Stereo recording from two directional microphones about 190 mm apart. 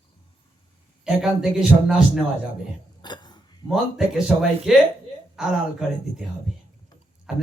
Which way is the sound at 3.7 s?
5° right (ahead or behind).